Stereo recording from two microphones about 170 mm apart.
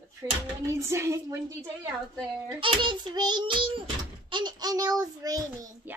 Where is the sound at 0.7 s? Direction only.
15° right (ahead or behind).